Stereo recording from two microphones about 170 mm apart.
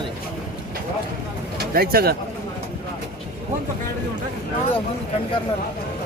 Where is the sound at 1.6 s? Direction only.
65° right (ahead or behind).